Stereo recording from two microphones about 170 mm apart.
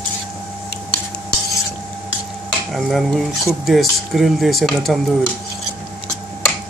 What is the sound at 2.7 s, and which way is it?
Speech, centre (ahead or behind).